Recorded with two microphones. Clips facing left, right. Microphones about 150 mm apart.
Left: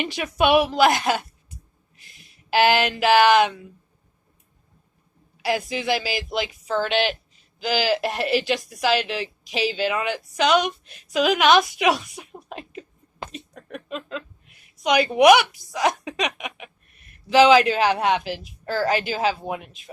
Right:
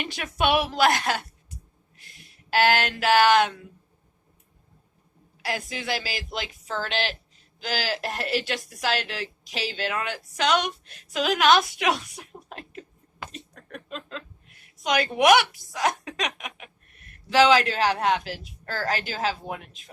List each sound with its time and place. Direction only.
0.0 s a woman's voice: centre (ahead or behind)
2.5 s a woman's voice: 5° left (ahead or behind)
5.5 s a woman's voice: 10° left (ahead or behind)
13.3 s a sound: 5° left (ahead or behind)
14.8 s a woman's voice: 5° left (ahead or behind)